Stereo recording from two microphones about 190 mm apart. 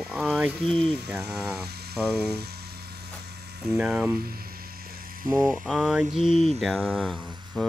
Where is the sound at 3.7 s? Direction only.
10° right (ahead or behind).